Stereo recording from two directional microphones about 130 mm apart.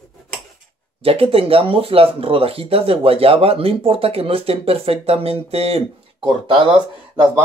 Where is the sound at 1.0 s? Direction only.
45° right (ahead or behind).